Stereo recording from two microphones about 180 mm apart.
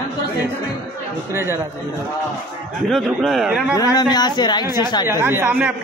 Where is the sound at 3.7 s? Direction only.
20° left (ahead or behind).